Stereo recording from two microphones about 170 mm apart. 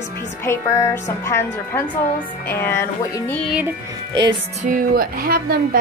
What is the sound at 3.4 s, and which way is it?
Speech, 5° right (ahead or behind).